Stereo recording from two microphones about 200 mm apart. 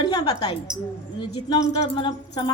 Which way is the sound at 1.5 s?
25° left (ahead or behind).